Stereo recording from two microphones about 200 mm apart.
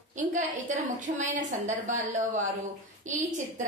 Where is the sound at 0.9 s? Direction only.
40° right (ahead or behind).